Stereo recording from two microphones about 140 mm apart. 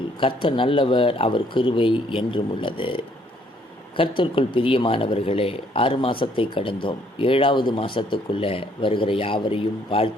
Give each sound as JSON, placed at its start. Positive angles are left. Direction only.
{"t": 0.2, "sound": "speech", "side_deg": 40}
{"t": 4.2, "sound": "speech", "side_deg": 40}